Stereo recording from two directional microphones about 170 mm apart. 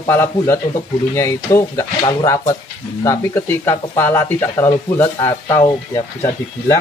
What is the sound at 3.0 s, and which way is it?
Speech, 15° left (ahead or behind).